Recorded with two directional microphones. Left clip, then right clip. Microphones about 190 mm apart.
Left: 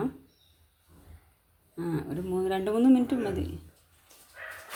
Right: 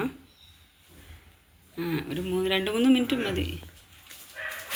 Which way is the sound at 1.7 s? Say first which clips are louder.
Right 2 dB; 10° left (ahead or behind).